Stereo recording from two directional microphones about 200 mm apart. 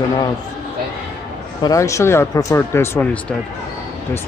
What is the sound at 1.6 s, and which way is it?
Speech, 15° left (ahead or behind).